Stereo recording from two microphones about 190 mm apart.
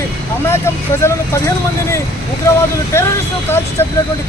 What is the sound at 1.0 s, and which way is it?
Speech, 15° left (ahead or behind).